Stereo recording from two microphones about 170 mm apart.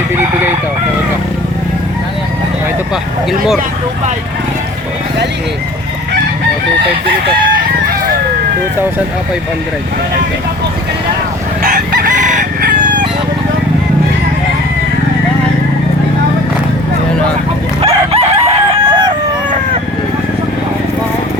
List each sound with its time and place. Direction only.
11.6 s chicken: 65° right (ahead or behind)
17.7 s chicken: 35° right (ahead or behind)